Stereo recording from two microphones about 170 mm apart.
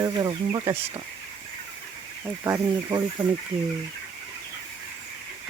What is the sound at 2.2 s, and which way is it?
Speech, 15° right (ahead or behind).